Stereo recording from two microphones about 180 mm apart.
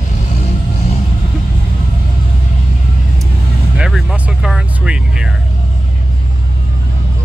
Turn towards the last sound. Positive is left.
turn(degrees=-5)  # may be behind; listen again after turning